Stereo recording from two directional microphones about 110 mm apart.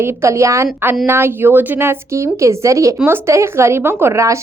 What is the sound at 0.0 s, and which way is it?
A woman's voice, 25° right (ahead or behind).